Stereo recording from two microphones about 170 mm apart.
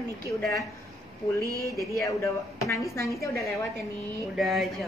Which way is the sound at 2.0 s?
20° left (ahead or behind).